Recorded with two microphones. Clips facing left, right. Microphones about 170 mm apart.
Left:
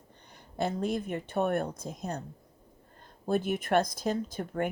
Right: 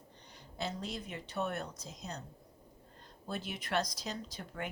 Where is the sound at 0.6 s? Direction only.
55° left (ahead or behind).